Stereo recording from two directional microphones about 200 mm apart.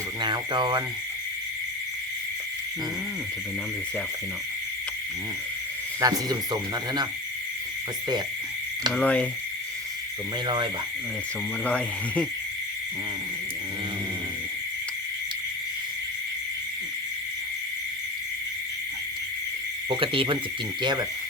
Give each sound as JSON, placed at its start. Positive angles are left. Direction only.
{"t": 0.2, "sound": "speech", "side_deg": -25}
{"t": 6.0, "sound": "speech", "side_deg": -20}
{"t": 8.9, "sound": "speech", "side_deg": 5}
{"t": 10.4, "sound": "speech", "side_deg": -25}
{"t": 11.6, "sound": "owl", "side_deg": 5}
{"t": 19.9, "sound": "speech", "side_deg": -25}